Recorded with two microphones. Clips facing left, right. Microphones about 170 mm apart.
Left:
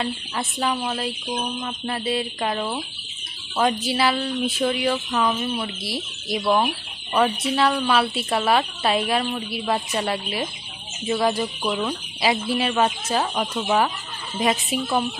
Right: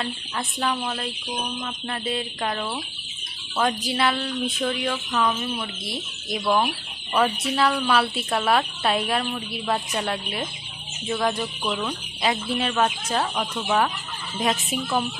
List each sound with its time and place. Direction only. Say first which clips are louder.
0.0 s a woman's voice: left 3 dB; 5° left (ahead or behind)
11.6 s speech: left 2 dB; 20° left (ahead or behind)
12.2 s a woman's voice: left 2 dB; 5° left (ahead or behind)